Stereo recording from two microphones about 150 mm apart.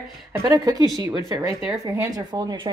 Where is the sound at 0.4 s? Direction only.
25° right (ahead or behind).